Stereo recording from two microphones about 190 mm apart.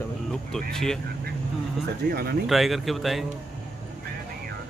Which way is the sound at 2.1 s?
55° right (ahead or behind).